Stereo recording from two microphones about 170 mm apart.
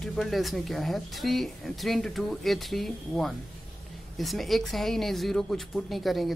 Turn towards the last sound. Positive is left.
turn(degrees=0)  # may be behind; listen again after turning